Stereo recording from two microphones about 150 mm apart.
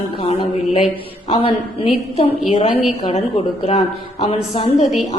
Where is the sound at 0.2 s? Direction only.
40° left (ahead or behind).